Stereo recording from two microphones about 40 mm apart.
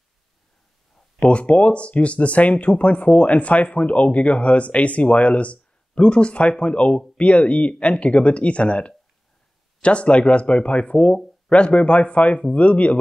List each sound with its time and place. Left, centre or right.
1.2 s speech: left